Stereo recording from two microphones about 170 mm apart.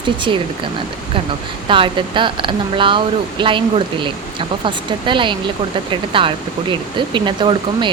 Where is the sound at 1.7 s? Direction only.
30° right (ahead or behind).